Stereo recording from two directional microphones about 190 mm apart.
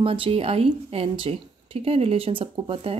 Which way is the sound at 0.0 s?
30° right (ahead or behind).